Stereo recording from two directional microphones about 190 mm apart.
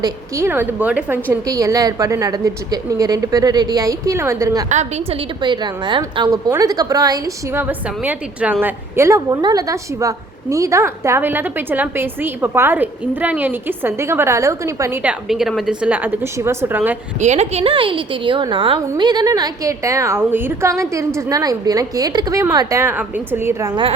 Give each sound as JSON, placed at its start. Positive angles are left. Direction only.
{"t": 0.0, "sound": "a woman's voice", "side_deg": -15}
{"t": 4.7, "sound": "a woman's voice", "side_deg": -35}
{"t": 5.4, "sound": "a woman's voice", "side_deg": -25}
{"t": 15.3, "sound": "a woman's voice", "side_deg": 0}
{"t": 17.2, "sound": "a woman's voice", "side_deg": -35}